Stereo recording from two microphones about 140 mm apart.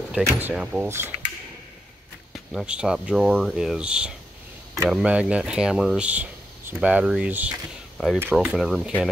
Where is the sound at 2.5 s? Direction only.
5° right (ahead or behind).